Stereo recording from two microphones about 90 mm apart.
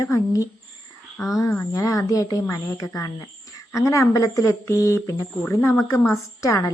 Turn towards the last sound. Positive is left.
turn(degrees=40)  # may be behind; listen again after turning